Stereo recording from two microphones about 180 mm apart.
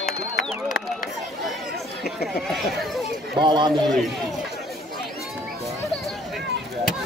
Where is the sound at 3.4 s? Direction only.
25° right (ahead or behind).